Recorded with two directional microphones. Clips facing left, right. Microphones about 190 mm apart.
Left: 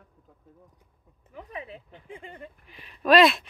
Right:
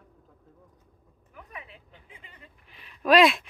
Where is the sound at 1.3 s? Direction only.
30° left (ahead or behind).